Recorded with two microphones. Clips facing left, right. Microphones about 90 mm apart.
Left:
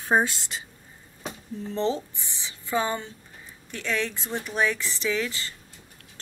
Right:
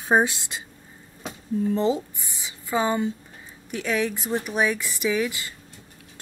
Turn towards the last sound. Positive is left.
turn(degrees=-15)  # may be behind; listen again after turning